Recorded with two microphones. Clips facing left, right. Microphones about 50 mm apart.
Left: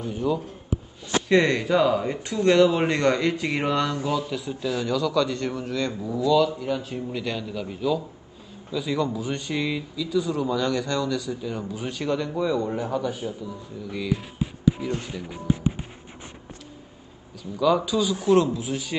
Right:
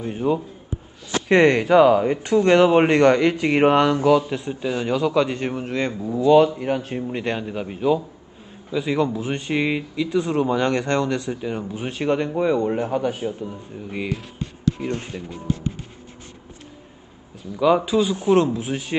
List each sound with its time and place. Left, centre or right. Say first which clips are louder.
0.0 s a man's voice: right 3 dB; right
4.3 s a man's voice: right 3 dB; right
7.0 s a man's voice: right 4 dB; right
9.9 s speech: right 3 dB; right
11.4 s a man's voice: right 3 dB; right
14.1 s music: left 2 dB; centre
15.2 s speech: left 3 dB; centre
17.4 s a man's voice: right 3 dB; right